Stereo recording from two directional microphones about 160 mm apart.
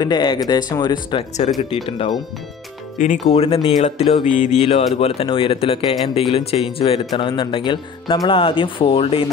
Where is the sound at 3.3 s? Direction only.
35° left (ahead or behind).